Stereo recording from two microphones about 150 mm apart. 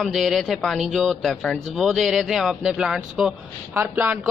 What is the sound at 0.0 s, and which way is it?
A man's voice, centre (ahead or behind).